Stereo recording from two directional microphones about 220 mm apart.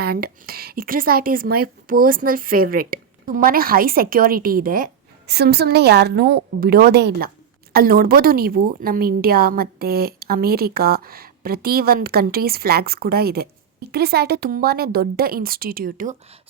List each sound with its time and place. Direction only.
0.0 s a woman's voice: 45° right (ahead or behind)